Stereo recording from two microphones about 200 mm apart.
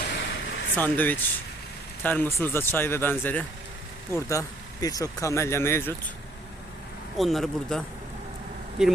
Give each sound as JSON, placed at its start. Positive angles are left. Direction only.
{"t": 0.1, "sound": "a sound", "side_deg": 65}
{"t": 0.8, "sound": "speech", "side_deg": 10}
{"t": 7.2, "sound": "speech", "side_deg": 0}